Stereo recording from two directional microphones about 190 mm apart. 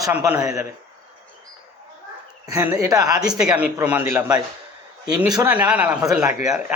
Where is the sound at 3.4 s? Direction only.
5° right (ahead or behind); by 5.4 s 20° right (ahead or behind).